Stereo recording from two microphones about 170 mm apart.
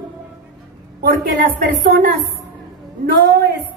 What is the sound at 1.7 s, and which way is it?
Speech, 65° right (ahead or behind).